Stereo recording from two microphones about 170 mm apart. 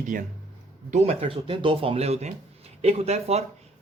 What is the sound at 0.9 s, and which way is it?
Speech, 40° right (ahead or behind).